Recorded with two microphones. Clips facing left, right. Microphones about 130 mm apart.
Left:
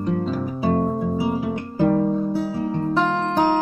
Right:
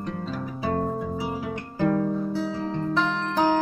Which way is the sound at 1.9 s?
25° left (ahead or behind).